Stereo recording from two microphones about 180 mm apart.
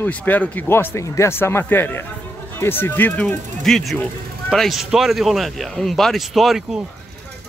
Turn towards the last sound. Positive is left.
turn(degrees=0)  # may be behind; listen again after turning